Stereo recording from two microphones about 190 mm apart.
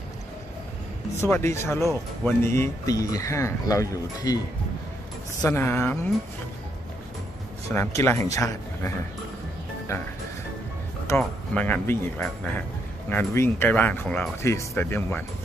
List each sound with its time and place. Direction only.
1.2 s speech: 15° left (ahead or behind)
5.4 s speech: 10° left (ahead or behind)
7.7 s speech: 15° left (ahead or behind)
11.1 s speech: 10° left (ahead or behind)